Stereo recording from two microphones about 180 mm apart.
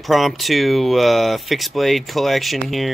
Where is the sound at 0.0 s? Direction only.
Centre (ahead or behind).